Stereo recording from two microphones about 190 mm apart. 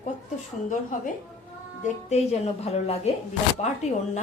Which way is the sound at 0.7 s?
40° left (ahead or behind).